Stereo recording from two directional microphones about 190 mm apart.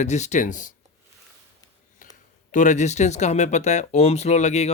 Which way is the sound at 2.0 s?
45° left (ahead or behind).